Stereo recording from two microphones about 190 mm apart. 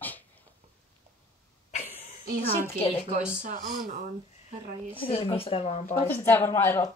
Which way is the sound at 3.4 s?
45° right (ahead or behind).